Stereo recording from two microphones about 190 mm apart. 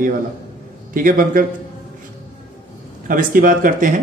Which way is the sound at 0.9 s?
45° right (ahead or behind).